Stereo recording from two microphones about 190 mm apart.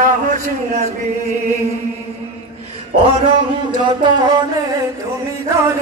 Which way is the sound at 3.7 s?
25° right (ahead or behind).